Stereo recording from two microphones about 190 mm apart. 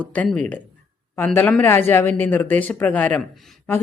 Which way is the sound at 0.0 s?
5° left (ahead or behind).